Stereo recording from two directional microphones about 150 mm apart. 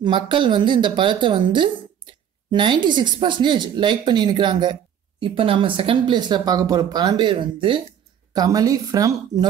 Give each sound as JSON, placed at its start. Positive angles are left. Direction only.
{"t": 0.0, "sound": "a woman's voice", "side_deg": -35}